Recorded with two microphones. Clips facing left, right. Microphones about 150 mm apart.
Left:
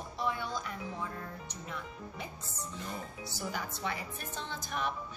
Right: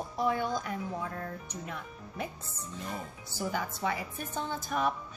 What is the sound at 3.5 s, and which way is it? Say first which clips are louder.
A woman's voice: right 5 dB; 50° right (ahead or behind).